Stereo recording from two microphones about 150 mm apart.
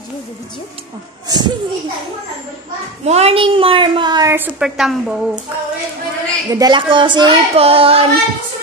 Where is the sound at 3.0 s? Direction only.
45° right (ahead or behind); by 4.3 s 25° right (ahead or behind).